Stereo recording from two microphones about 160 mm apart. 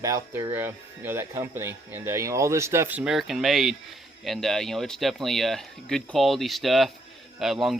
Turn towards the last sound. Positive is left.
turn(degrees=0)  # may be behind; listen again after turning